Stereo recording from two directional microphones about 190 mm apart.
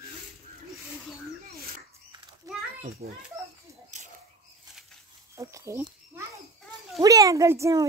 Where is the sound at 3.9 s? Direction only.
40° right (ahead or behind).